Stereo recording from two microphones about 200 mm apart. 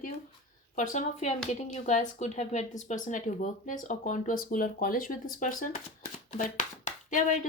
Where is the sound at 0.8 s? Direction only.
35° left (ahead or behind).